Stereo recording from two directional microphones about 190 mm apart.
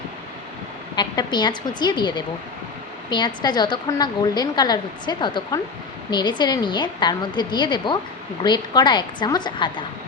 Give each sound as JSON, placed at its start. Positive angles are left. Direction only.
{"t": 0.9, "sound": "a woman's voice", "side_deg": 25}